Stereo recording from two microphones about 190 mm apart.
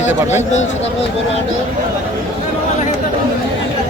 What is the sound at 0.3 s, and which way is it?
Speech, 40° left (ahead or behind).